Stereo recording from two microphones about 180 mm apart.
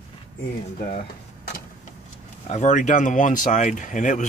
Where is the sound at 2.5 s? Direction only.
40° left (ahead or behind).